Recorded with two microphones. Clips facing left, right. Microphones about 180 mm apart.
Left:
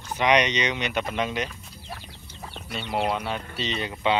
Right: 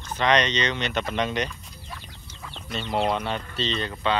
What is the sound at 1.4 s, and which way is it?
Chicken, 40° left (ahead or behind).